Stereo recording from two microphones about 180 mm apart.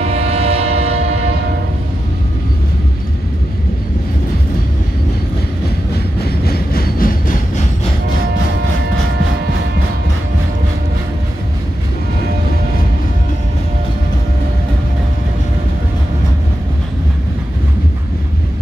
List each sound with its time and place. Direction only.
0.0 s train: 35° right (ahead or behind)
6.2 s train: 60° left (ahead or behind)